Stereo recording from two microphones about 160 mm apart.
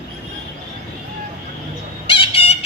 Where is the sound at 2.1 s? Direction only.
35° left (ahead or behind).